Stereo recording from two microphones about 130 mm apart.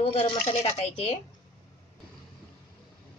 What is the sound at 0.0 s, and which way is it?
Speech, 55° left (ahead or behind).